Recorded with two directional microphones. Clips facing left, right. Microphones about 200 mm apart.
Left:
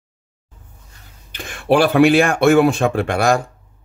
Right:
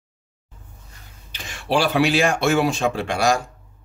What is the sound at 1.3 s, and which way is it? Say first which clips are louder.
Speech: left 6 dB; 55° left (ahead or behind).